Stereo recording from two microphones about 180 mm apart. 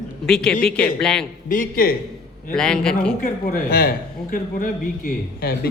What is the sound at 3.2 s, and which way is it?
A man's voice, 55° left (ahead or behind).